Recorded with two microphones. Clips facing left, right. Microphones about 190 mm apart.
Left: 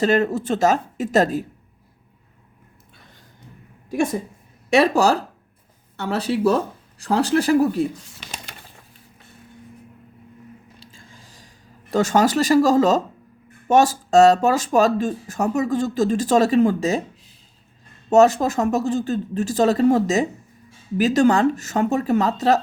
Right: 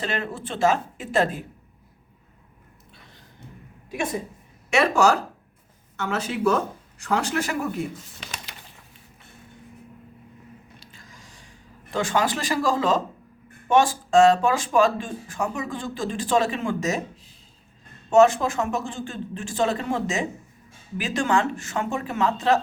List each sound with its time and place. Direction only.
0.0 s speech: 40° left (ahead or behind)
4.7 s speech: 35° left (ahead or behind)
10.9 s a sound: 30° left (ahead or behind)
13.7 s speech: 40° left (ahead or behind)
18.1 s speech: 40° left (ahead or behind)